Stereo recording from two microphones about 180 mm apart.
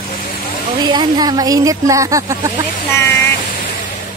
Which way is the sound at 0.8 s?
25° right (ahead or behind).